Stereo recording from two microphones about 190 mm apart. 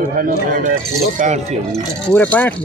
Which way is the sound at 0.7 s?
40° right (ahead or behind).